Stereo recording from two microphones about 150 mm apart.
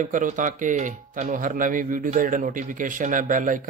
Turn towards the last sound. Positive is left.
turn(degrees=-60)  # may be behind; listen again after turning